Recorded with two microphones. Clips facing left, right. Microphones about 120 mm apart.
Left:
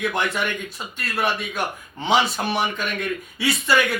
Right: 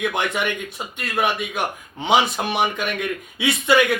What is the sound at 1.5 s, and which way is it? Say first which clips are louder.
A man's voice: right 2 dB; 15° right (ahead or behind).